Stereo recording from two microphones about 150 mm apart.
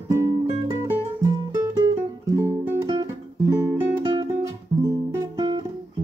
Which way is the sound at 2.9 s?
25° right (ahead or behind).